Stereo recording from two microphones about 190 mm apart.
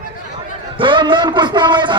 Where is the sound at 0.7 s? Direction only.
25° right (ahead or behind).